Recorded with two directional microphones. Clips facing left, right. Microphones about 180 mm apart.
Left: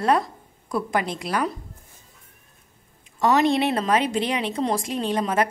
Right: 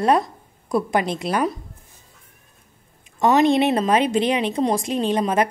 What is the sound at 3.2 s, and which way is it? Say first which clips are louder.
A woman's voice: right 3 dB; 20° right (ahead or behind).